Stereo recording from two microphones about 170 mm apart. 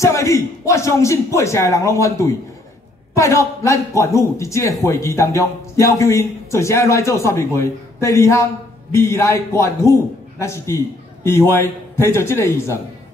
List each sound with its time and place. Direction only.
0.0 s a man's voice: 20° left (ahead or behind)